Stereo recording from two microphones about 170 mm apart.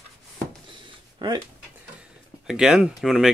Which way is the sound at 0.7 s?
25° right (ahead or behind).